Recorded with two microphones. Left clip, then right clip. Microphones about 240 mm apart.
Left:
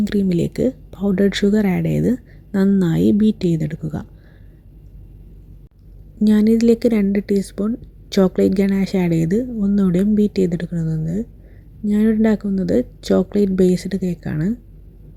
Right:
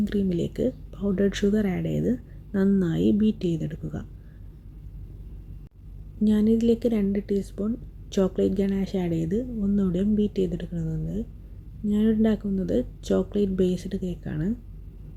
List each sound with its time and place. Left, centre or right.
0.0 s speech: left
6.2 s speech: left